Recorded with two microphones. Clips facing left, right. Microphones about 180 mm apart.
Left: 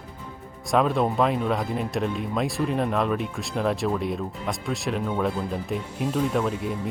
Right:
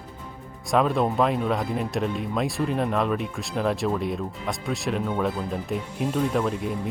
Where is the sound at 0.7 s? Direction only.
Centre (ahead or behind).